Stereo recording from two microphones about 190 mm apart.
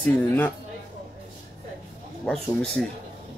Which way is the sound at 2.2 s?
Centre (ahead or behind).